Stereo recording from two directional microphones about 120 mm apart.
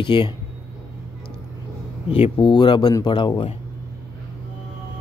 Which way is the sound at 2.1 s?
45° left (ahead or behind).